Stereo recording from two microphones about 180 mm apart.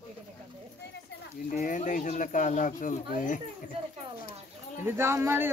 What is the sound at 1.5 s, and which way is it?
Speech, 45° left (ahead or behind).